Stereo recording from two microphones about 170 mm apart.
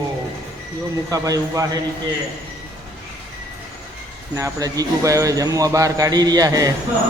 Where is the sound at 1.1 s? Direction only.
20° right (ahead or behind).